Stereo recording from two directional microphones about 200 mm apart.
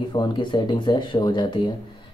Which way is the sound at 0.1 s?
20° left (ahead or behind).